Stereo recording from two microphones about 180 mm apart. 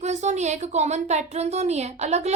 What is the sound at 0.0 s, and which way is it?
A woman's voice, 40° right (ahead or behind).